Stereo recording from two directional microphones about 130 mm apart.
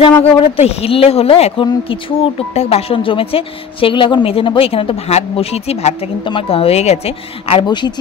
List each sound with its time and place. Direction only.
0.0 s speech: 55° left (ahead or behind)
6.2 s speech: 45° left (ahead or behind)
7.6 s speech: 35° left (ahead or behind)